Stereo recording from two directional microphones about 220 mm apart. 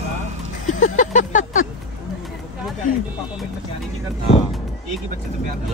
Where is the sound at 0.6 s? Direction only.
35° left (ahead or behind).